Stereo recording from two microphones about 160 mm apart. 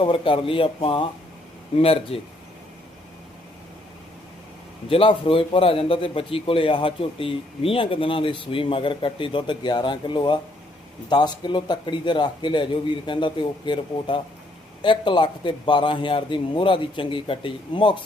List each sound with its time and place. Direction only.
0.0 s a man's voice: 30° left (ahead or behind)
4.9 s a man's voice: 35° left (ahead or behind)